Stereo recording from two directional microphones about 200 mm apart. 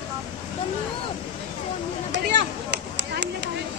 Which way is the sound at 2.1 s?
60° right (ahead or behind).